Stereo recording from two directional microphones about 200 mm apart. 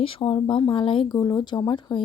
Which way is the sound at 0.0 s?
25° left (ahead or behind).